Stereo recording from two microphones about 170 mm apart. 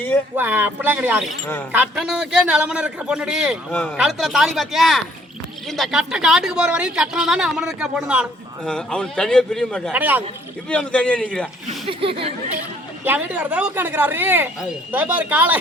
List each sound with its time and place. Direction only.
0.3 s speech: 10° right (ahead or behind)
3.7 s a man's voice: 10° left (ahead or behind)
3.9 s speech: centre (ahead or behind)
8.6 s speech: 5° left (ahead or behind)
9.9 s speech: 10° right (ahead or behind)
10.7 s a man's voice: 5° left (ahead or behind)
11.9 s speech: 30° right (ahead or behind)
13.1 s speech: 10° right (ahead or behind)